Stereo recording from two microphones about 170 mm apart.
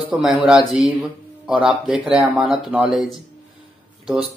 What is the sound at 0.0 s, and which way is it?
Speech, centre (ahead or behind).